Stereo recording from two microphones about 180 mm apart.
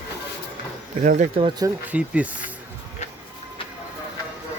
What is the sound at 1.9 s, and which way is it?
Speech, 5° right (ahead or behind).